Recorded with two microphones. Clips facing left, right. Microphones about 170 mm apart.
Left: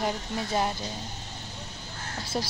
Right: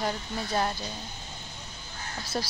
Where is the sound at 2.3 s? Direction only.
15° left (ahead or behind).